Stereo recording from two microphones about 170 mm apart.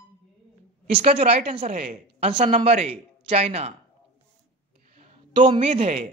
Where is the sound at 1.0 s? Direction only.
35° right (ahead or behind).